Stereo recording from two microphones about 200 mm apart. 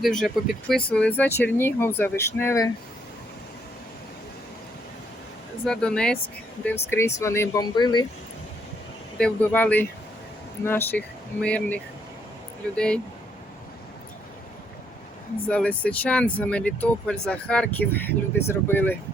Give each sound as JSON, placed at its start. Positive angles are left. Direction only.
{"t": 0.2, "sound": "speech", "side_deg": 0}
{"t": 5.6, "sound": "speech", "side_deg": 5}
{"t": 9.1, "sound": "speech", "side_deg": 5}
{"t": 15.4, "sound": "speech", "side_deg": 5}